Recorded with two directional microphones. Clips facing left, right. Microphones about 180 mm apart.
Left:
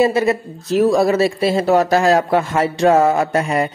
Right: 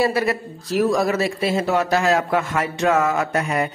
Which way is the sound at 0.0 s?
25° left (ahead or behind).